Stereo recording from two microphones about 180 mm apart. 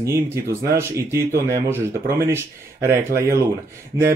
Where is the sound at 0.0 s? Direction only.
15° right (ahead or behind).